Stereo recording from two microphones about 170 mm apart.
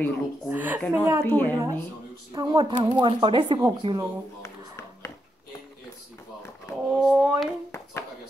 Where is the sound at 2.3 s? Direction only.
25° right (ahead or behind).